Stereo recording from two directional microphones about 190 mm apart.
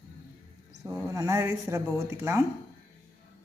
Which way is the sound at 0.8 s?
15° right (ahead or behind).